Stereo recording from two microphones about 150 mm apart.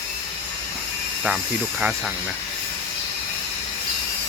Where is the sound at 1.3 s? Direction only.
5° right (ahead or behind).